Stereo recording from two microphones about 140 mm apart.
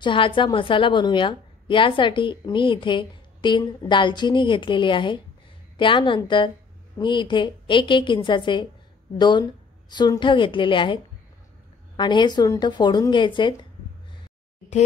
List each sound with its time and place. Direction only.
0.0 s a woman's voice: 35° left (ahead or behind)
12.0 s a woman's voice: 35° left (ahead or behind)